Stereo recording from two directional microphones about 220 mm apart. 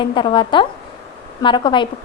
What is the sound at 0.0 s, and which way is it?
A woman's voice, 20° left (ahead or behind).